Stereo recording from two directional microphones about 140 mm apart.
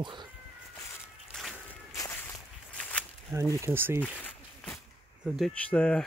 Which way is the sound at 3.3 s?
20° right (ahead or behind).